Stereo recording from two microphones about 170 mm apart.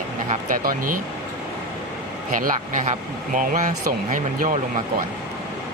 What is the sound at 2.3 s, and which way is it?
Speech, 45° right (ahead or behind).